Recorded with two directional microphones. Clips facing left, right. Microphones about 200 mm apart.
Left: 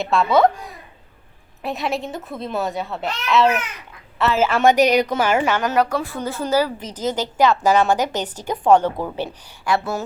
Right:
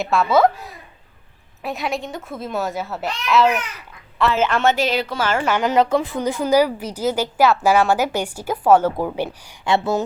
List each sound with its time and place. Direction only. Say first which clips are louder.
0.0 s a woman's voice: even; centre (ahead or behind); by 5.5 s 15° left (ahead or behind)
5.5 s a woman's voice: right 3 dB; 20° right (ahead or behind)